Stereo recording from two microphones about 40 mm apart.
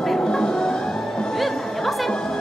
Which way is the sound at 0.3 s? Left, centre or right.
Centre.